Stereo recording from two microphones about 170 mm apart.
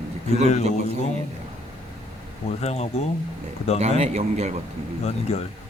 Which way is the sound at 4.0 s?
40° right (ahead or behind).